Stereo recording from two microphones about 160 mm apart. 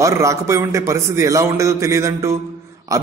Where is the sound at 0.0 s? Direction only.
20° right (ahead or behind).